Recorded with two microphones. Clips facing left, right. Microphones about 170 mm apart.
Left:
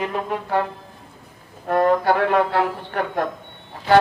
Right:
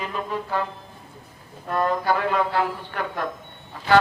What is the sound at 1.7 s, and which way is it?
Speech, 60° left (ahead or behind).